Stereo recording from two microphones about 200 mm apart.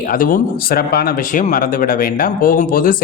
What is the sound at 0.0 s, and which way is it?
A man's voice, 45° left (ahead or behind).